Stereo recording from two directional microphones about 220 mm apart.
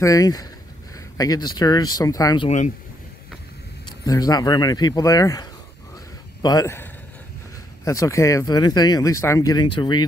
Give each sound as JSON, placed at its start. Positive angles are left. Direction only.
{"t": 0.0, "sound": "speech", "side_deg": 15}
{"t": 4.0, "sound": "speech", "side_deg": 15}